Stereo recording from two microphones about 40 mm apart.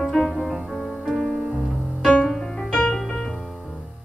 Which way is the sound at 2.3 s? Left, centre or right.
Centre.